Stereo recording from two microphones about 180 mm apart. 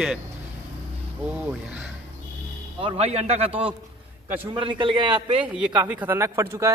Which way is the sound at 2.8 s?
35° right (ahead or behind).